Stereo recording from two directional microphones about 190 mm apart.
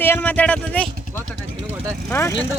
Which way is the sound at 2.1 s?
15° left (ahead or behind).